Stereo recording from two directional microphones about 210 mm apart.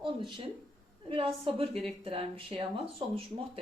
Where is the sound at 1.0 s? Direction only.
25° right (ahead or behind).